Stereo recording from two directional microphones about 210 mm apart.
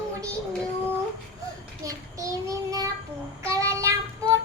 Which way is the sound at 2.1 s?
15° right (ahead or behind).